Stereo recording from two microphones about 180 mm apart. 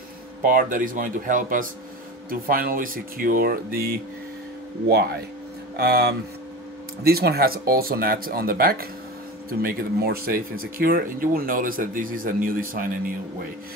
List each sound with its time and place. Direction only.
0.4 s speech: 50° right (ahead or behind)
5.8 s speech: 60° right (ahead or behind)